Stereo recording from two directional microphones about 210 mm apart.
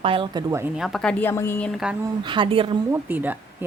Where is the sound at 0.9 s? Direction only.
5° left (ahead or behind).